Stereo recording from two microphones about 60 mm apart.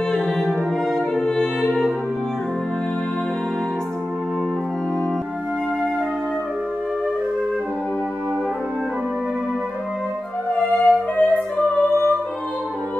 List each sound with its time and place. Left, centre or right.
0.1 s music: centre
10.8 s music: left